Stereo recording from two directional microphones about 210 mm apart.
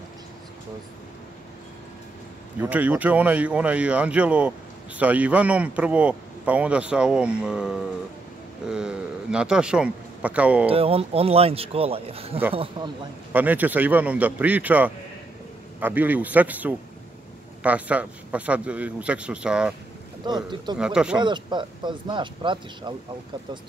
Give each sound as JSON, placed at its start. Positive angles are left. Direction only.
{"t": 2.6, "sound": "speech", "side_deg": -5}
{"t": 10.7, "sound": "speech", "side_deg": -25}
{"t": 13.3, "sound": "a man's voice", "side_deg": -10}
{"t": 20.2, "sound": "speech", "side_deg": -20}
{"t": 20.7, "sound": "speech", "side_deg": -5}
{"t": 21.2, "sound": "speech", "side_deg": -20}